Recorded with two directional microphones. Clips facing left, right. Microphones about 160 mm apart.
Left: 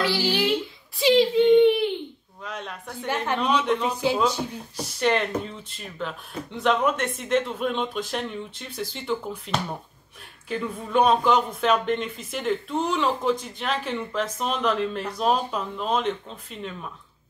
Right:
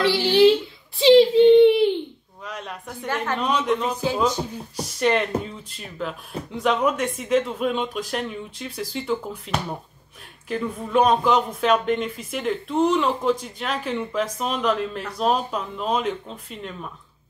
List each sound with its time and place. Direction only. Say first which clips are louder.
0.0 s a child's voice: right 8 dB; 30° right (ahead or behind)
2.4 s a sound: right 1 dB; 5° right (ahead or behind)
3.3 s speech: even; 10° right (ahead or behind)
3.8 s a man's voice: even; 10° left (ahead or behind)
4.9 s speech: right 2 dB; centre (ahead or behind)